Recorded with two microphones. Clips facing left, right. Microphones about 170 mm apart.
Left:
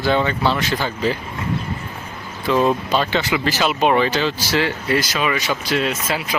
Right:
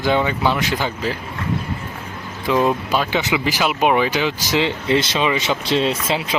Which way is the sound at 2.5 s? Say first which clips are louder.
Left 1 dB; 10° right (ahead or behind).